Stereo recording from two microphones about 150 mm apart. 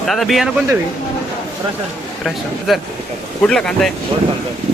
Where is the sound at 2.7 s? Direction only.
Centre (ahead or behind).